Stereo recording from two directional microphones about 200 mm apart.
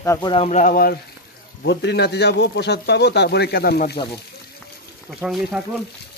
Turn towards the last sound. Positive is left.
turn(degrees=0)  # may be behind; listen again after turning